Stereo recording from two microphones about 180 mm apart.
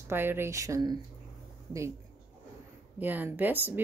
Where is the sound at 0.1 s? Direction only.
15° right (ahead or behind).